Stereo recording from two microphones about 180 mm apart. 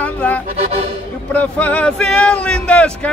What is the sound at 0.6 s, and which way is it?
Speech, 35° right (ahead or behind).